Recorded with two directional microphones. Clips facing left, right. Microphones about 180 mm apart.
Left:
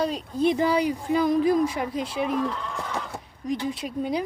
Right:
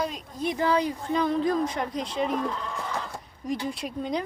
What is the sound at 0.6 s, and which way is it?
Speech, 10° left (ahead or behind).